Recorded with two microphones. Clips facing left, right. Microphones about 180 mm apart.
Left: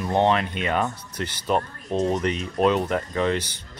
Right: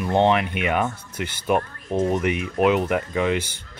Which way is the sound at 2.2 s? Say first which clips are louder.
Right 2 dB; 10° right (ahead or behind).